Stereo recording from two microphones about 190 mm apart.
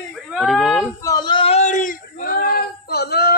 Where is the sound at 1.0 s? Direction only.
20° left (ahead or behind); by 3.3 s 55° left (ahead or behind).